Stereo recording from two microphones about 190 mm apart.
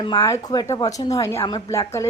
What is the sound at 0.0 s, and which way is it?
A woman's voice, 20° left (ahead or behind).